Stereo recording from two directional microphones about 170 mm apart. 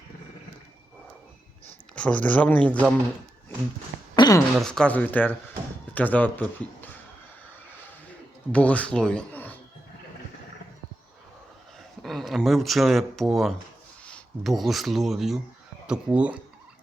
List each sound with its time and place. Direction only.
2.0 s speech: 10° left (ahead or behind)
4.1 s a sound: 25° left (ahead or behind)
4.5 s a man's voice: 5° left (ahead or behind)
8.5 s speech: 10° left (ahead or behind)
12.0 s speech: centre (ahead or behind)